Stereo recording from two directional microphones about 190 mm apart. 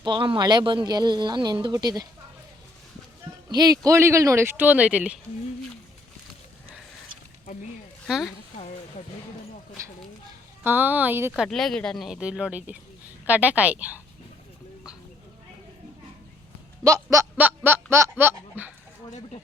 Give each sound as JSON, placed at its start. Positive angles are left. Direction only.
{"t": 0.0, "sound": "speech", "side_deg": -25}
{"t": 3.5, "sound": "speech", "side_deg": -20}
{"t": 8.0, "sound": "a woman's voice", "side_deg": 0}
{"t": 10.6, "sound": "speech", "side_deg": -10}
{"t": 11.4, "sound": "speech", "side_deg": 0}
{"t": 16.8, "sound": "a sound", "side_deg": -15}
{"t": 17.9, "sound": "speech", "side_deg": -10}